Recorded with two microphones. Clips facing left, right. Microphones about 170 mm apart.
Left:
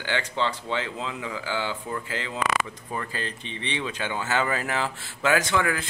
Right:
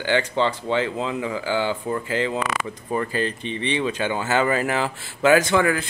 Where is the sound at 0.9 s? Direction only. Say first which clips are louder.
Right 7 dB; 50° right (ahead or behind).